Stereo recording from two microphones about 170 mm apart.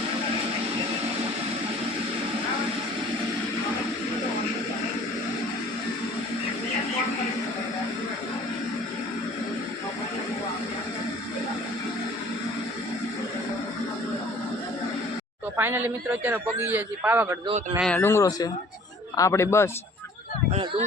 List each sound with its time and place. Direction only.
15.5 s a man's voice: 10° right (ahead or behind)
17.7 s speech: 5° left (ahead or behind)
20.5 s speech: 35° right (ahead or behind)